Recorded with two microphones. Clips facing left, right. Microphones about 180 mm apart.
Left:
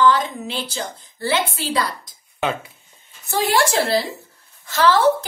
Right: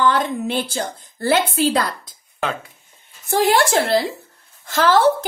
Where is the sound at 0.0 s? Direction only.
55° right (ahead or behind).